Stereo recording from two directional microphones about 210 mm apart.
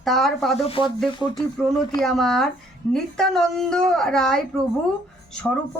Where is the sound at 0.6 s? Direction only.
25° left (ahead or behind).